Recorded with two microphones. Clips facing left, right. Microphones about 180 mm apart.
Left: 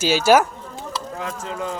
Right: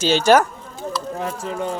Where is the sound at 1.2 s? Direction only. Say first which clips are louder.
Right 1 dB; 30° right (ahead or behind).